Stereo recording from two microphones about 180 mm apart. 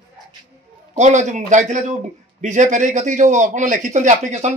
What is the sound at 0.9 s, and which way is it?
A man's voice, 40° right (ahead or behind).